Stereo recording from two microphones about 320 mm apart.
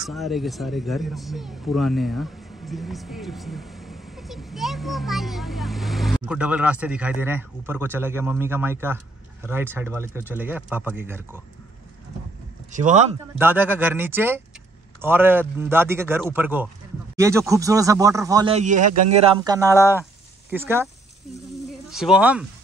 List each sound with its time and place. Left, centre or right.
0.0 s speech: centre
12.7 s speech: right
13.4 s speech: centre; by 19.3 s right
19.4 s speech: centre
21.9 s speech: centre